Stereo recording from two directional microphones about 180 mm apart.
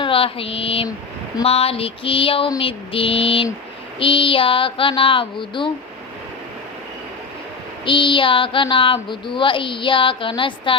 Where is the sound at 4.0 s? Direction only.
30° left (ahead or behind).